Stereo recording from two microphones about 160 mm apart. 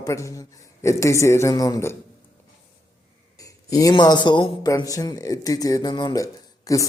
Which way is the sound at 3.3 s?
20° left (ahead or behind).